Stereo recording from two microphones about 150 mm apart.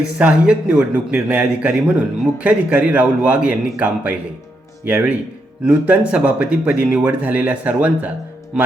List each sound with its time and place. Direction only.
0.0 s speech: 5° right (ahead or behind)